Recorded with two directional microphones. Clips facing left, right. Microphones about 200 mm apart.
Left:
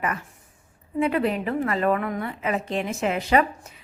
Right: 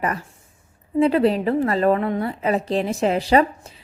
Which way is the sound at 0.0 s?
35° right (ahead or behind).